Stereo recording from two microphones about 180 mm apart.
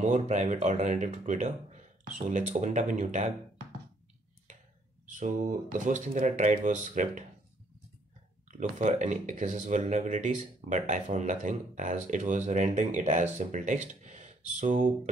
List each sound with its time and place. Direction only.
0.0 s speech: 40° right (ahead or behind)
5.0 s speech: 45° right (ahead or behind)
8.5 s speech: 45° right (ahead or behind)